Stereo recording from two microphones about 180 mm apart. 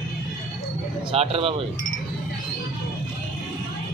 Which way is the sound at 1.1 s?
35° right (ahead or behind).